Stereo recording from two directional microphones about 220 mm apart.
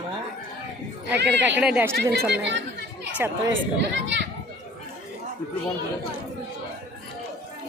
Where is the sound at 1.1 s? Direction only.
50° right (ahead or behind).